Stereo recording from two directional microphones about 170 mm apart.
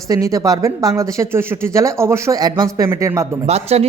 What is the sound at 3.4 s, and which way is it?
Speech, 40° right (ahead or behind).